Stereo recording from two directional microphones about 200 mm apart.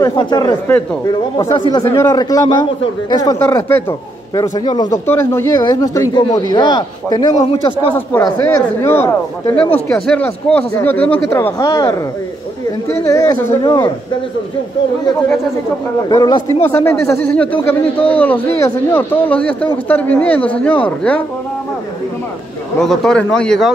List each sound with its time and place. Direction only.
0.0 s speech: 20° left (ahead or behind)
7.9 s a man's voice: 15° left (ahead or behind)
13.0 s a man's voice: 15° left (ahead or behind)
16.1 s a man's voice: 20° left (ahead or behind)
22.8 s speech: 5° left (ahead or behind)